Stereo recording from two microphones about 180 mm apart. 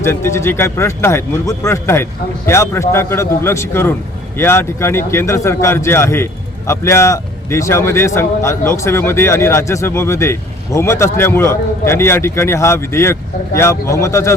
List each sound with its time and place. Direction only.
0.0 s a man's voice: 15° left (ahead or behind)